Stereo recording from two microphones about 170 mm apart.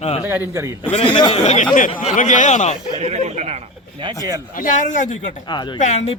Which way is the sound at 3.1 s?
40° right (ahead or behind).